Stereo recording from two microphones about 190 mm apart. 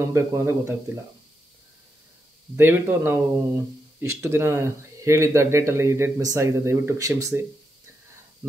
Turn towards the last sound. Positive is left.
turn(degrees=-15)  # may be behind; listen again after turning